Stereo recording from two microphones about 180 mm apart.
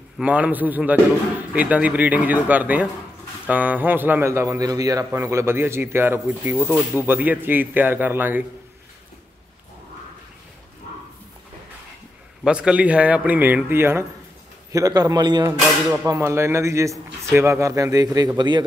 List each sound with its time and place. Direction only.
0.2 s speech: 10° right (ahead or behind)
12.4 s a man's voice: 5° right (ahead or behind); by 18.7 s 25° right (ahead or behind)